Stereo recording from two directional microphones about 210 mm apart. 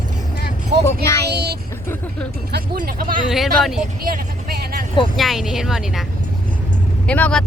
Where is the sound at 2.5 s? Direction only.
45° right (ahead or behind).